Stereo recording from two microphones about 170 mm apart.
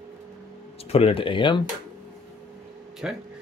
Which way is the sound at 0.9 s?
35° left (ahead or behind).